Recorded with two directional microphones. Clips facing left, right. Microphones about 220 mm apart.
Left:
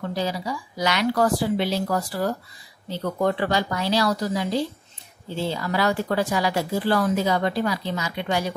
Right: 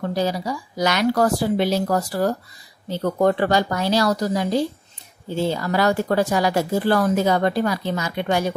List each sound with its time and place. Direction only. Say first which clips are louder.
0.0 s speech: right 4 dB; 45° right (ahead or behind)